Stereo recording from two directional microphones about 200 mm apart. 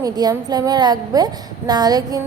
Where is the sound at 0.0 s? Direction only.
20° right (ahead or behind).